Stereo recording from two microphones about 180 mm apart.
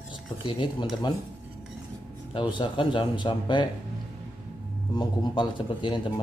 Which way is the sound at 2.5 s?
25° left (ahead or behind).